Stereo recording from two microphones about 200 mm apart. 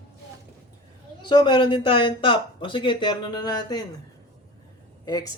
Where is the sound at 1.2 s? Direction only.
20° left (ahead or behind).